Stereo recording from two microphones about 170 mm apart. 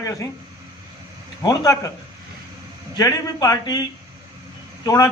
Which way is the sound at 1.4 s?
20° left (ahead or behind).